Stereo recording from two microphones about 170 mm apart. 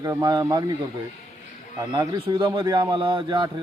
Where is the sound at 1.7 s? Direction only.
20° right (ahead or behind).